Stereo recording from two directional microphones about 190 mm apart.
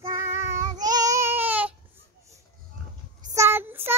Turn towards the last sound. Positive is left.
turn(degrees=-10)  # may be behind; listen again after turning